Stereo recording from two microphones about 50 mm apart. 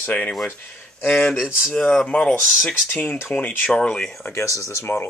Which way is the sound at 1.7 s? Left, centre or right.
Left.